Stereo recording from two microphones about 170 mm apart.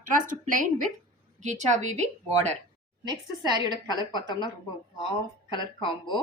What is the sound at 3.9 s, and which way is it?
Speech, 25° left (ahead or behind).